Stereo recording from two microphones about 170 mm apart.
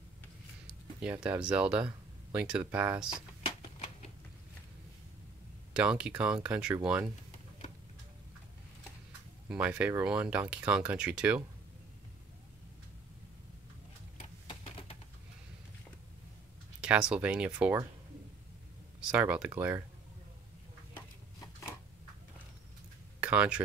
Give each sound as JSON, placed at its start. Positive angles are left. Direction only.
{"t": 0.7, "sound": "speech", "side_deg": -5}
{"t": 3.4, "sound": "a sound", "side_deg": 35}
{"t": 5.7, "sound": "speech", "side_deg": -5}
{"t": 9.5, "sound": "speech", "side_deg": -5}
{"t": 14.5, "sound": "typewriter", "side_deg": 35}
{"t": 16.8, "sound": "speech", "side_deg": -5}
{"t": 19.0, "sound": "speech", "side_deg": -5}
{"t": 23.2, "sound": "speech", "side_deg": -10}